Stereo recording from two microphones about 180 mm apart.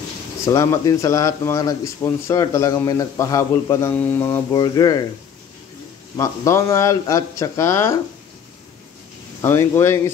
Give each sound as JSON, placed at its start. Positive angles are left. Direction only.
{"t": 0.5, "sound": "speech", "side_deg": 15}
{"t": 6.1, "sound": "speech", "side_deg": 15}
{"t": 9.4, "sound": "speech", "side_deg": 15}